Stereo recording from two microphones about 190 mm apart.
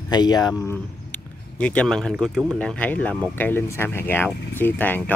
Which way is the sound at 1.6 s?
5° left (ahead or behind).